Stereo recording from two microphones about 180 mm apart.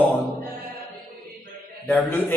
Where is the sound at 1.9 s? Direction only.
10° left (ahead or behind).